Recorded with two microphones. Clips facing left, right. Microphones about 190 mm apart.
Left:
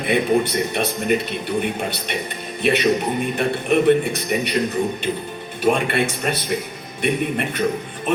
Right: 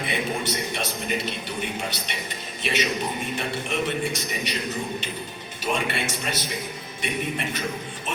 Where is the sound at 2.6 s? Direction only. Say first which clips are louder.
Left 8 dB; 55° left (ahead or behind).